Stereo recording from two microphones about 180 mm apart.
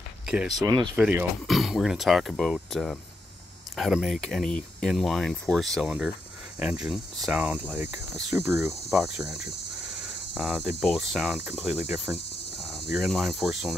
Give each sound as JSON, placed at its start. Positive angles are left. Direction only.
{"t": 0.3, "sound": "speech", "side_deg": -5}
{"t": 0.6, "sound": "speech", "side_deg": -20}
{"t": 0.9, "sound": "speech", "side_deg": -5}
{"t": 6.6, "sound": "cricket", "side_deg": -5}
{"t": 8.6, "sound": "speech", "side_deg": 0}
{"t": 10.3, "sound": "cricket", "side_deg": -5}
{"t": 10.8, "sound": "speech", "side_deg": 0}